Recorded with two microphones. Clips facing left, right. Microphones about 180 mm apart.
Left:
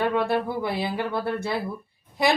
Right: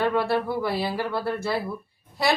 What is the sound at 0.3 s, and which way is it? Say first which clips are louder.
A woman's voice: right 1 dB; 15° left (ahead or behind).